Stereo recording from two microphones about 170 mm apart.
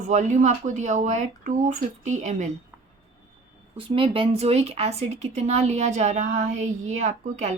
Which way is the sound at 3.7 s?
30° right (ahead or behind).